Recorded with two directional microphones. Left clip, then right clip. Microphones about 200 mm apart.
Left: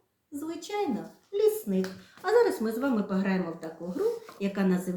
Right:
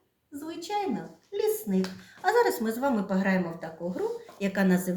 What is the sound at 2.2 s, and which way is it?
A woman's voice, 50° right (ahead or behind).